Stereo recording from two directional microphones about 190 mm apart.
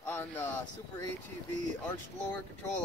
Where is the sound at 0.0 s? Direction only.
10° left (ahead or behind).